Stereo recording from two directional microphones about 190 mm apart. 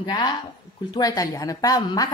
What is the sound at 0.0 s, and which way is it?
A woman's voice, 20° left (ahead or behind).